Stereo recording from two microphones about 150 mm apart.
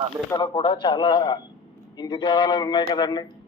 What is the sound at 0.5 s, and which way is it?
A man's voice, 35° left (ahead or behind).